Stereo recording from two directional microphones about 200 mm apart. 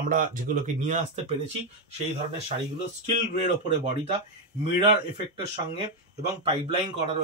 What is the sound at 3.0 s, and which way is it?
Speech, 35° right (ahead or behind).